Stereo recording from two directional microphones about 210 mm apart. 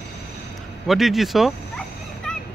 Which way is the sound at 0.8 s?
Centre (ahead or behind).